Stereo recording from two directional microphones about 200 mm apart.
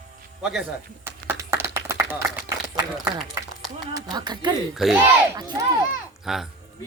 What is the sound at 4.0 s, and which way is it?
Speech, 20° right (ahead or behind).